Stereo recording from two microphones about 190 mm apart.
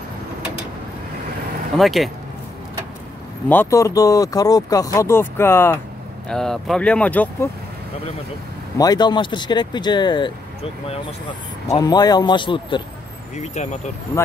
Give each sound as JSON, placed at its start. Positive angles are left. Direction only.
{"t": 1.8, "sound": "speech", "side_deg": 0}
{"t": 3.4, "sound": "speech", "side_deg": 15}
{"t": 6.2, "sound": "speech", "side_deg": 5}
{"t": 8.7, "sound": "speech", "side_deg": 20}
{"t": 13.4, "sound": "speech", "side_deg": 35}